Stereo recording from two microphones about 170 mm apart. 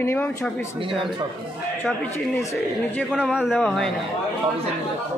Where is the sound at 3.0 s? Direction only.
5° right (ahead or behind).